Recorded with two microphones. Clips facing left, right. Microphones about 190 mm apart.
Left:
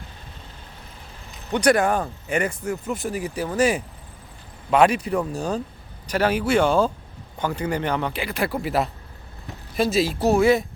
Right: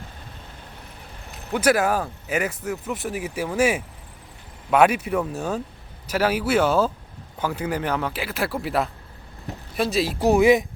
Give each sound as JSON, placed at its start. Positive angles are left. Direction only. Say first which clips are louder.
{"t": 1.5, "sound": "speech", "louder": "left 1 dB", "side_deg": -5}
{"t": 10.2, "sound": "speech", "louder": "right 3 dB", "side_deg": -15}